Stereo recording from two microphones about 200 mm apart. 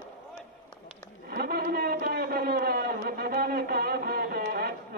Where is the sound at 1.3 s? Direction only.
50° right (ahead or behind).